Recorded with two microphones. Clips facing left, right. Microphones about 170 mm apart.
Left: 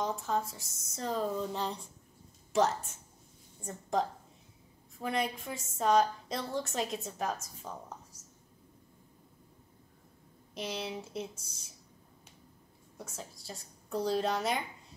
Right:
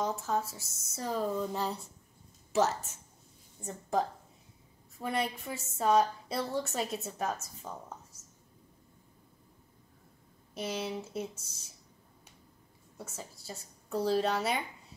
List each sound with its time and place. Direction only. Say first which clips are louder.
0.0 s a woman's voice: right 1 dB; 5° right (ahead or behind)
10.5 s a woman's voice: right 2 dB; 5° right (ahead or behind)
12.9 s a woman's voice: even; 5° right (ahead or behind)